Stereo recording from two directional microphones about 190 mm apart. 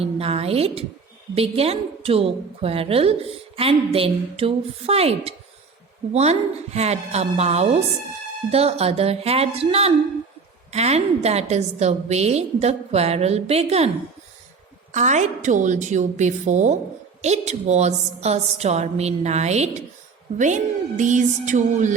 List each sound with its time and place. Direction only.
0.0 s a woman's voice: 30° right (ahead or behind)
14.9 s a woman's voice: 40° right (ahead or behind)